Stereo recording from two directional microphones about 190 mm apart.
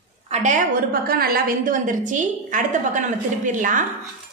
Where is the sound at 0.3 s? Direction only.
40° right (ahead or behind).